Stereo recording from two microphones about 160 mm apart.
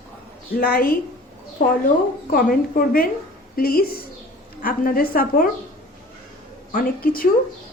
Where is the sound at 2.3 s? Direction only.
65° left (ahead or behind).